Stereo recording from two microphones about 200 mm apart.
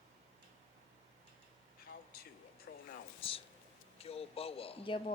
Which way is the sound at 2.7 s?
55° left (ahead or behind).